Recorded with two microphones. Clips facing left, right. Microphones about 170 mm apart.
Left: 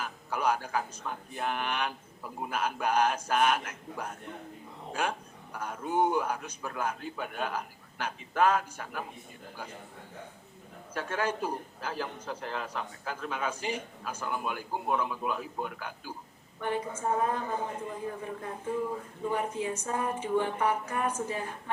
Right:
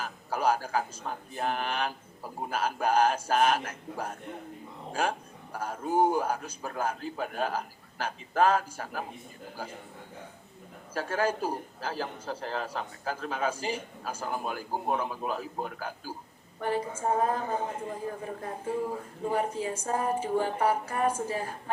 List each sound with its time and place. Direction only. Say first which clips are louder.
0.0 s a man's voice: right 2 dB; 35° right (ahead or behind)
10.9 s a man's voice: right 3 dB; 35° right (ahead or behind)